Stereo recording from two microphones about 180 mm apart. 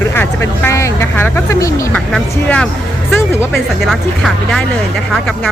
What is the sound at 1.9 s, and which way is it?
Speech, 5° left (ahead or behind).